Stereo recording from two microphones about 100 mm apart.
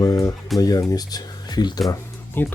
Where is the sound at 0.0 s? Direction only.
40° left (ahead or behind).